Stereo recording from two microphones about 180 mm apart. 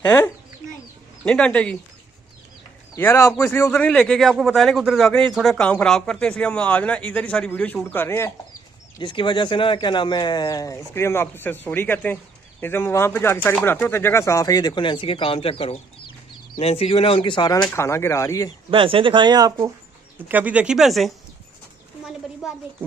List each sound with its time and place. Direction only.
1.2 s a man's voice: 5° left (ahead or behind)
2.9 s a man's voice: 15° left (ahead or behind)
8.9 s a man's voice: 25° left (ahead or behind)
18.7 s speech: 30° right (ahead or behind)
20.2 s speech: 10° right (ahead or behind)